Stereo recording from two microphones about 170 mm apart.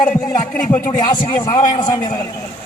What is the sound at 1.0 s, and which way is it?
A man's voice, 20° left (ahead or behind).